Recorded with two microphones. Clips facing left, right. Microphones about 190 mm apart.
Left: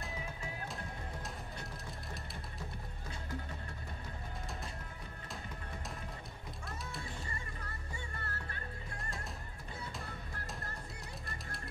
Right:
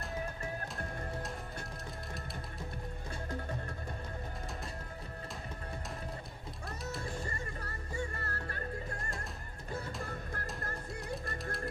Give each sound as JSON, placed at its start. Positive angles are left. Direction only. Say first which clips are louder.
{"t": 7.0, "sound": "music", "louder": "right 5 dB", "side_deg": -45}